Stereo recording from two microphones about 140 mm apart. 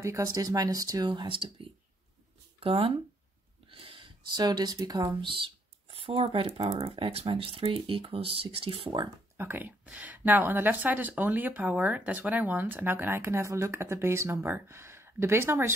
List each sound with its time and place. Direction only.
0.0 s speech: 25° right (ahead or behind)
9.4 s speech: 15° right (ahead or behind)